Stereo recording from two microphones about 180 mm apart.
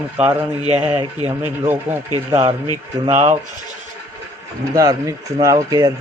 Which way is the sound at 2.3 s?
35° right (ahead or behind).